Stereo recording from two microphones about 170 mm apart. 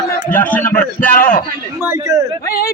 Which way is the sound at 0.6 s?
55° left (ahead or behind).